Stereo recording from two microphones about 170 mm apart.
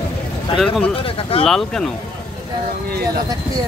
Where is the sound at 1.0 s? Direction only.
35° left (ahead or behind).